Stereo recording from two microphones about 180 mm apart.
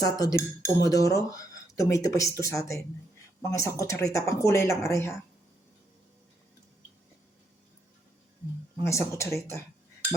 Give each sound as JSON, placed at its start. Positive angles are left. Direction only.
{"t": 0.0, "sound": "speech", "side_deg": 20}
{"t": 8.8, "sound": "speech", "side_deg": 15}